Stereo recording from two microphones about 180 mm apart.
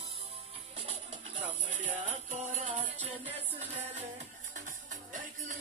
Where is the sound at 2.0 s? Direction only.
40° right (ahead or behind).